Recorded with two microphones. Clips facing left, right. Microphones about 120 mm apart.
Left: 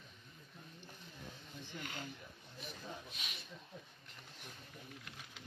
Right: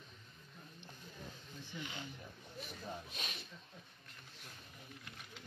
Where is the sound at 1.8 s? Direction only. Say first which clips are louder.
Even; 45° left (ahead or behind).